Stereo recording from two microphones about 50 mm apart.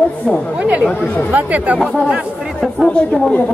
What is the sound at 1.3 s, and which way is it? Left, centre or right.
Speech, right.